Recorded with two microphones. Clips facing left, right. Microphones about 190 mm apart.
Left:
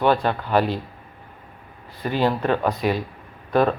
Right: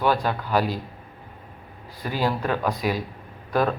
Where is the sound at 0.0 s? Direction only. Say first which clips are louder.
Left 3 dB; 5° right (ahead or behind).